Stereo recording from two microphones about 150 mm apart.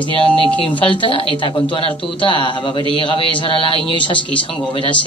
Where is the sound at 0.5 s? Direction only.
35° left (ahead or behind).